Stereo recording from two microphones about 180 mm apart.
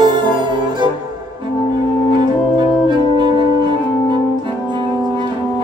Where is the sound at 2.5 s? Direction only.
25° right (ahead or behind).